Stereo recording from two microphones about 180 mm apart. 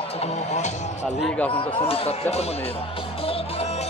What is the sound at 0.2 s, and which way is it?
Speech, 40° left (ahead or behind).